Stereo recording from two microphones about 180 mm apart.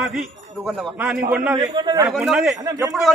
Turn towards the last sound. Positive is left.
turn(degrees=0)  # may be behind; listen again after turning